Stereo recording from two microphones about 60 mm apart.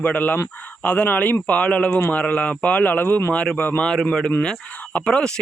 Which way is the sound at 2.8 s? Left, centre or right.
Left.